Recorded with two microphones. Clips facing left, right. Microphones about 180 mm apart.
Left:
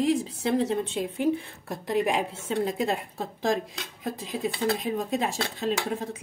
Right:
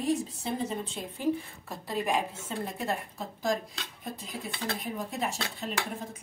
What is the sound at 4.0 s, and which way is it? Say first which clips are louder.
A woman's voice: left 9 dB; 90° left.